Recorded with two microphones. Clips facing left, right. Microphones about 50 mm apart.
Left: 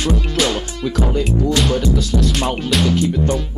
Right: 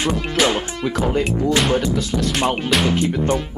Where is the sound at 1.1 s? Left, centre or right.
Right.